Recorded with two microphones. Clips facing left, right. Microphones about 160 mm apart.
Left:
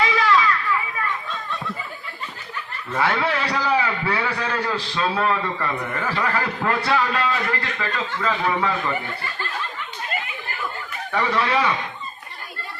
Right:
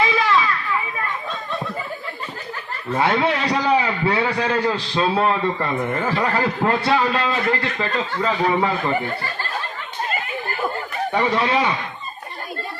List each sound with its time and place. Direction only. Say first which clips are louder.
0.0 s children playing: even; 20° right (ahead or behind)
2.9 s a man's voice: right 3 dB; 25° right (ahead or behind)
11.1 s a man's voice: right 1 dB; 25° right (ahead or behind)